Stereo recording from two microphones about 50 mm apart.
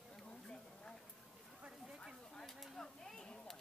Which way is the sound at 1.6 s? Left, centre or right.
Centre.